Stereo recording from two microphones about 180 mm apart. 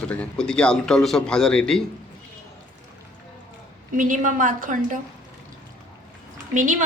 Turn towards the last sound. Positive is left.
turn(degrees=-45)  # may be behind; listen again after turning